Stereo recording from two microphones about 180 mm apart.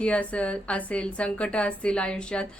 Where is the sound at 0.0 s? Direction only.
5° left (ahead or behind).